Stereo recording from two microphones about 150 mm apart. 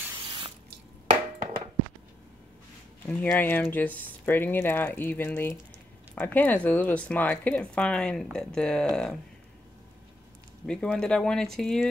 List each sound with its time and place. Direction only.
0.2 s drip: 30° right (ahead or behind)
3.1 s speech: 10° left (ahead or behind)
10.7 s speech: 5° left (ahead or behind)